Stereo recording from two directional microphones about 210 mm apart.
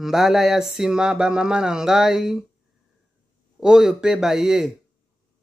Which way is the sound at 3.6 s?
5° right (ahead or behind).